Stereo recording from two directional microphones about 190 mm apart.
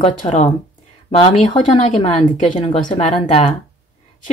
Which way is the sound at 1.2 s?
35° left (ahead or behind).